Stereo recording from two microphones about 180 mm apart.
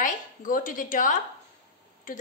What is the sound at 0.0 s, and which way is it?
A woman's voice, 50° left (ahead or behind).